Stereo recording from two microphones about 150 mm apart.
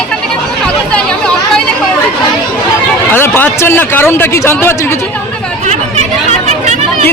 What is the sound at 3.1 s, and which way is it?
A man's voice, 15° left (ahead or behind).